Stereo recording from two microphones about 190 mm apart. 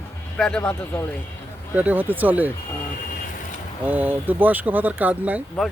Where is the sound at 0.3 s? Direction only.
5° left (ahead or behind).